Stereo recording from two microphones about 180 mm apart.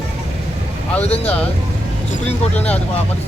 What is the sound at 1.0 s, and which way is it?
Speech, 35° left (ahead or behind).